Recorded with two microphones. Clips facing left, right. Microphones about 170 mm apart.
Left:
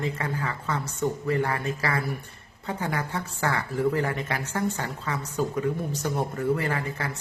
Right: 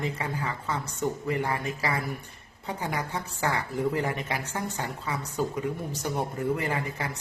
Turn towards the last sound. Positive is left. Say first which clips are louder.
# left 1 dB
turn(degrees=-15)  # may be behind; listen again after turning